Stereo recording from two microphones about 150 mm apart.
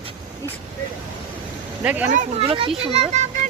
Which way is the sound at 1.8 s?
10° right (ahead or behind).